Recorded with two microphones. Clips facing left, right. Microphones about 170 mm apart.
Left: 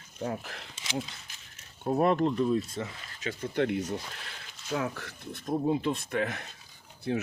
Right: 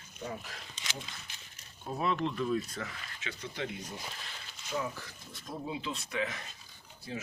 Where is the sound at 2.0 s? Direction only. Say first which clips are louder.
Left 7 dB; 50° left (ahead or behind).